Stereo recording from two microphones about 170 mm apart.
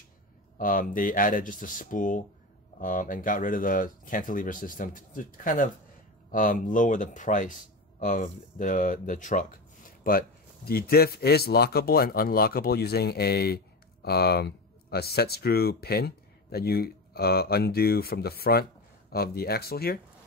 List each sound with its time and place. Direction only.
0.6 s speech: 55° left (ahead or behind)